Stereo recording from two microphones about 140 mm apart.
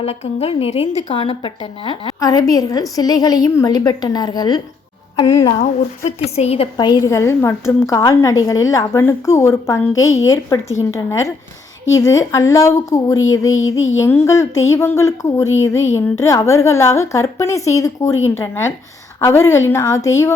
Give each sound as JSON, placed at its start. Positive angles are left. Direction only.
{"t": 0.0, "sound": "a woman's voice", "side_deg": 45}
{"t": 6.1, "sound": "a woman's voice", "side_deg": 50}
{"t": 6.7, "sound": "speech", "side_deg": 30}